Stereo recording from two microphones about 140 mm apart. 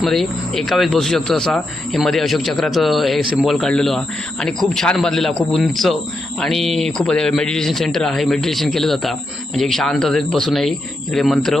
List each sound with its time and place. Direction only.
0.0 s speech: centre (ahead or behind)